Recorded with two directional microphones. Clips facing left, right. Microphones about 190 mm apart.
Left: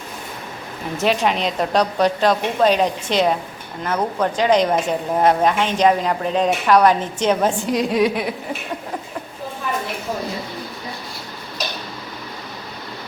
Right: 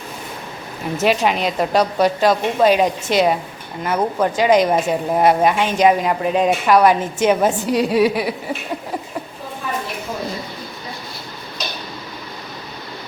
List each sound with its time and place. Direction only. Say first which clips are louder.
0.9 s a woman's voice: right 2 dB; 5° right (ahead or behind)